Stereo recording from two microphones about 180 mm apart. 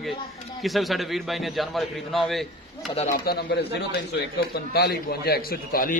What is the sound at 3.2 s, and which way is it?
A man's voice, 60° left (ahead or behind).